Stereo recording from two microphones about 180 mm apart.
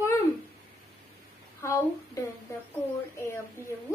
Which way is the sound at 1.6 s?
15° left (ahead or behind).